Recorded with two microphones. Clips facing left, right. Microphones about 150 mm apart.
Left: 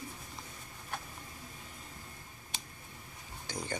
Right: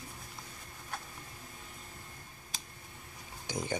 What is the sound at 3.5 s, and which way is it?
Speech, 15° right (ahead or behind).